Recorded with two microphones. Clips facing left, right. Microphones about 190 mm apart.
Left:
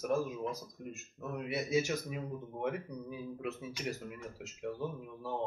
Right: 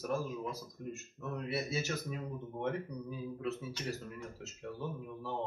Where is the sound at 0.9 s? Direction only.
15° left (ahead or behind).